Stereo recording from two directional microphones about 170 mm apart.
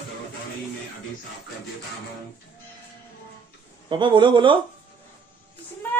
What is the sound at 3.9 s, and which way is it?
Speech, 30° right (ahead or behind).